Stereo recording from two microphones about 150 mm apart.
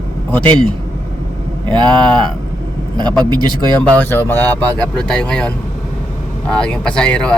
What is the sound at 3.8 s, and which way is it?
Speech, 10° left (ahead or behind).